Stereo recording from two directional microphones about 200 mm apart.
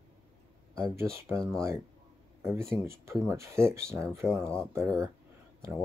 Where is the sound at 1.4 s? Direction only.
Centre (ahead or behind).